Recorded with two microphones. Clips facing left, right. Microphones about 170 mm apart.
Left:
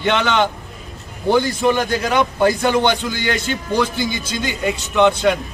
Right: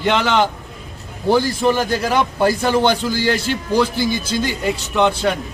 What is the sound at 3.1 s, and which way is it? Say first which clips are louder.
A man's voice: right 3 dB; 35° right (ahead or behind).